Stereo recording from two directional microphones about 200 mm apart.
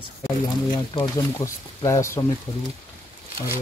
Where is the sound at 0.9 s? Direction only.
20° left (ahead or behind).